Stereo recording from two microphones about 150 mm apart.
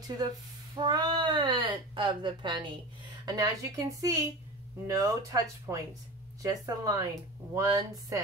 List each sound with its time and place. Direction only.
0.7 s speech: 30° right (ahead or behind)